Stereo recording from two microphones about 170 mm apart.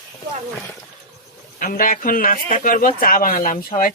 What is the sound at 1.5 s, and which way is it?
Speech, 55° left (ahead or behind).